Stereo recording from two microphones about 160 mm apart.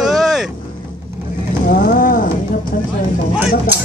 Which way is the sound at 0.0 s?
Centre (ahead or behind).